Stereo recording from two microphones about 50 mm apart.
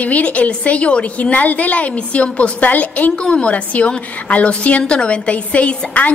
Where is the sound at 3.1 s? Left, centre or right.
Centre.